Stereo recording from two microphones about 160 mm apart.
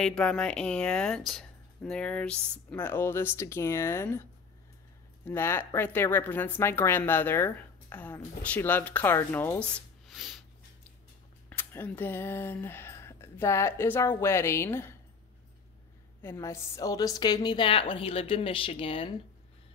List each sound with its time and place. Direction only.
0.0 s speech: 5° left (ahead or behind)
5.2 s speech: 15° left (ahead or behind)
10.0 s a sound: centre (ahead or behind)
11.4 s speech: 15° left (ahead or behind)
16.2 s a woman's voice: 15° left (ahead or behind); by 19.1 s 35° left (ahead or behind)